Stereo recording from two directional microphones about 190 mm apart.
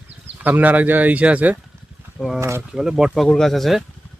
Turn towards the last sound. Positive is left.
turn(degrees=0)  # may be behind; listen again after turning